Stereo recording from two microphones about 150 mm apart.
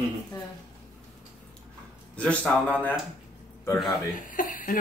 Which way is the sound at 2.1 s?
10° left (ahead or behind).